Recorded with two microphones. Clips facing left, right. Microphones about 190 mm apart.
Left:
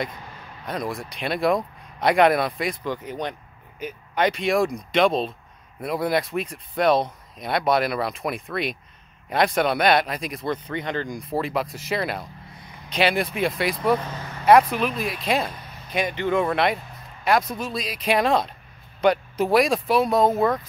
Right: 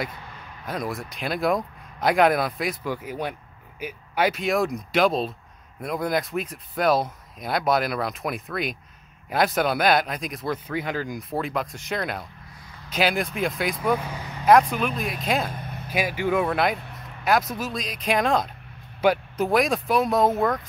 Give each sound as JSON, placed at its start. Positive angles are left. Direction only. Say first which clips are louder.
{"t": 0.7, "sound": "speech", "louder": "left 1 dB", "side_deg": 0}
{"t": 13.9, "sound": "vehicle", "louder": "left 2 dB", "side_deg": -10}
{"t": 14.4, "sound": "speech", "louder": "left 1 dB", "side_deg": 0}
{"t": 15.5, "sound": "vehicle", "louder": "right 5 dB", "side_deg": -50}
{"t": 15.9, "sound": "speech", "louder": "left 1 dB", "side_deg": -5}